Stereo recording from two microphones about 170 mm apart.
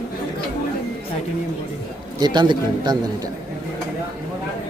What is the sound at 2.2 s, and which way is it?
Speech, 25° right (ahead or behind).